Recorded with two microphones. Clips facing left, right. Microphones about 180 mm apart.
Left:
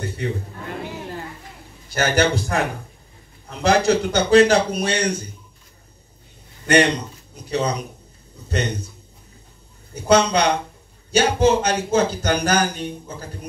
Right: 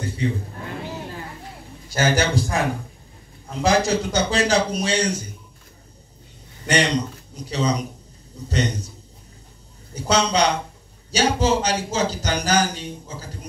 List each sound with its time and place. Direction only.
0.0 s a man's voice: 60° left (ahead or behind)
2.0 s speech: 60° left (ahead or behind)
6.7 s speech: 55° left (ahead or behind)
9.9 s speech: 55° left (ahead or behind)